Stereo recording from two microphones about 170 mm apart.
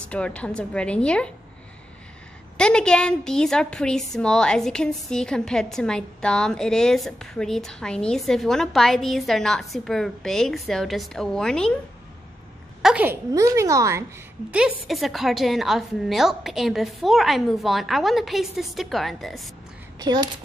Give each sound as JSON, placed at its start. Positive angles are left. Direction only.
{"t": 0.0, "sound": "a woman's voice", "side_deg": 5}
{"t": 2.5, "sound": "a woman's voice", "side_deg": 5}
{"t": 12.8, "sound": "a woman's voice", "side_deg": -10}
{"t": 14.5, "sound": "a woman's voice", "side_deg": -5}
{"t": 20.0, "sound": "speech", "side_deg": -25}